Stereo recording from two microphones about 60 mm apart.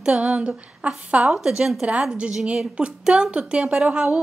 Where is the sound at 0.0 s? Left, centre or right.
Centre.